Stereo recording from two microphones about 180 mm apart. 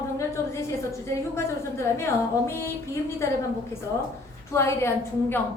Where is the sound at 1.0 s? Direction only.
15° left (ahead or behind).